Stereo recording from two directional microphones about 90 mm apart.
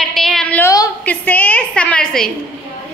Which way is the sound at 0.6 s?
40° left (ahead or behind).